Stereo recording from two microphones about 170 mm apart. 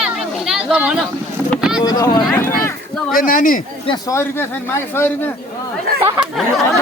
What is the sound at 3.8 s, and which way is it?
Speech, 25° left (ahead or behind).